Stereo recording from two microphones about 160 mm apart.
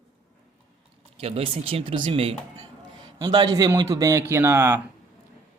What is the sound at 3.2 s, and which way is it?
A man's voice, 25° right (ahead or behind).